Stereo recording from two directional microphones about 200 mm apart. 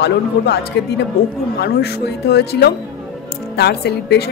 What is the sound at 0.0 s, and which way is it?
A woman's voice, 55° left (ahead or behind).